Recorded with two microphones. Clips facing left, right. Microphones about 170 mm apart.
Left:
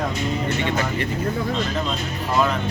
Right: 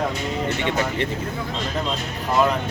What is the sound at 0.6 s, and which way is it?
Speech, 20° right (ahead or behind).